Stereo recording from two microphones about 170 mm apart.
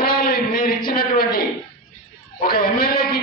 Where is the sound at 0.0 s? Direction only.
60° left (ahead or behind).